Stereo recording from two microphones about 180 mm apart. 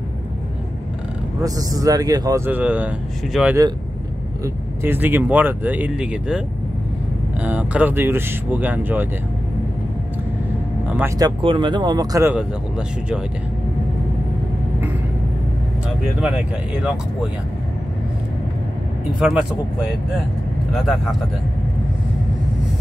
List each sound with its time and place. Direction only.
1.4 s speech: 20° right (ahead or behind); by 3.5 s centre (ahead or behind)
4.8 s speech: 10° right (ahead or behind)
11.1 s speech: 25° right (ahead or behind)
12.4 s speech: 5° right (ahead or behind)
16.2 s speech: 5° right (ahead or behind)
19.1 s speech: 5° right (ahead or behind)